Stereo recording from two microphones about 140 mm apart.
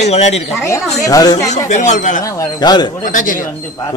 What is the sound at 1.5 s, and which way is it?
Speech, 60° left (ahead or behind).